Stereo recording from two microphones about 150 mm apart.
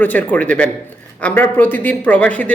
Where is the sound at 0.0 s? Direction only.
10° left (ahead or behind).